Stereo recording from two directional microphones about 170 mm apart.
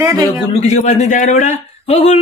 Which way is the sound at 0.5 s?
40° left (ahead or behind).